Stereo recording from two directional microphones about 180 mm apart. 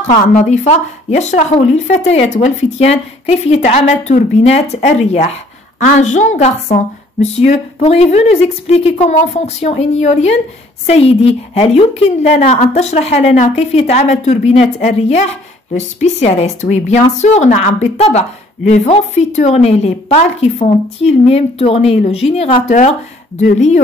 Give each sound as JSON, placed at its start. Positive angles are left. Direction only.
{"t": 0.0, "sound": "a woman's voice", "side_deg": 40}